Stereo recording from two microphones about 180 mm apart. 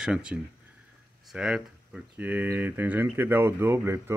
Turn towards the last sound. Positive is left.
turn(degrees=-15)  # may be behind; listen again after turning